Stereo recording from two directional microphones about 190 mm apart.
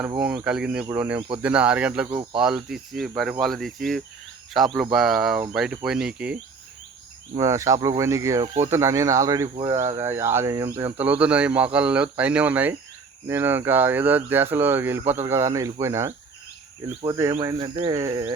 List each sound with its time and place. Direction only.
0.2 s speech: 5° right (ahead or behind)
7.3 s speech: 15° right (ahead or behind)